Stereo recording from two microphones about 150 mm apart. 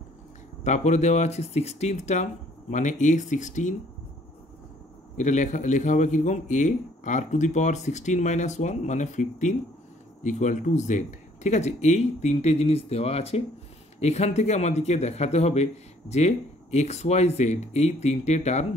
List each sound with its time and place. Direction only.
0.7 s a man's voice: 50° left (ahead or behind)
5.1 s a man's voice: 55° left (ahead or behind)